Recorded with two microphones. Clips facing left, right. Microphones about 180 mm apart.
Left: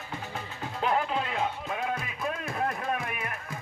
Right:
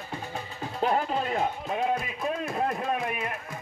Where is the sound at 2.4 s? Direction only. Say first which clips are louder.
Right 2 dB; 25° right (ahead or behind).